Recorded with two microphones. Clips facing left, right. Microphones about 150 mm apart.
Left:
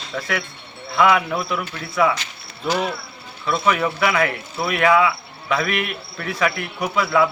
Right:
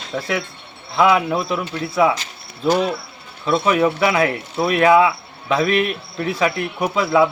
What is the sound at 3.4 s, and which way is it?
Speech, 35° right (ahead or behind).